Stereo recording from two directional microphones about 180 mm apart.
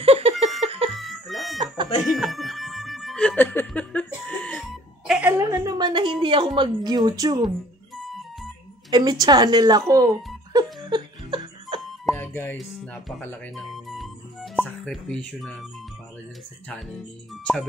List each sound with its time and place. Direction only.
0.0 s laughter: 35° right (ahead or behind)
0.6 s music: 35° right (ahead or behind)
0.9 s music: centre (ahead or behind)
5.4 s a woman's voice: 20° right (ahead or behind)
7.4 s music: centre (ahead or behind)
8.9 s speech: 20° right (ahead or behind)
10.9 s music: 25° right (ahead or behind)
12.2 s music: 10° left (ahead or behind)
12.5 s speech: 5° left (ahead or behind)